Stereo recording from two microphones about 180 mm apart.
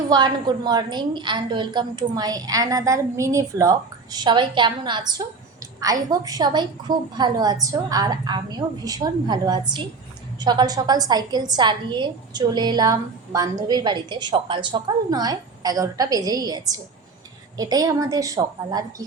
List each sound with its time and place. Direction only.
0.1 s a woman's voice: 25° right (ahead or behind)